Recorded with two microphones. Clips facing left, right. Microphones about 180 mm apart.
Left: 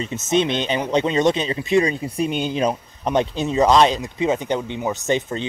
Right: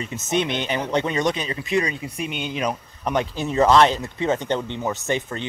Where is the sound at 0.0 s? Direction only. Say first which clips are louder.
Left 4 dB; 20° left (ahead or behind).